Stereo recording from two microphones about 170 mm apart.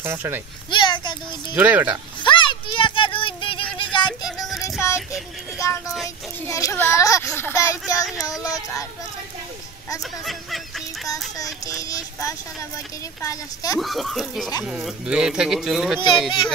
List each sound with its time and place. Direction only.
0.0 s speech: 15° right (ahead or behind)
0.7 s a sound: 25° left (ahead or behind)
1.5 s speech: 10° right (ahead or behind)
2.2 s a sound: 30° left (ahead or behind)
5.6 s speech: 20° left (ahead or behind)
11.3 s speech: 20° left (ahead or behind)
13.7 s speech: centre (ahead or behind)